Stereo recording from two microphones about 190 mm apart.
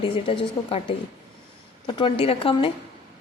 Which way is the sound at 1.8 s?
30° left (ahead or behind).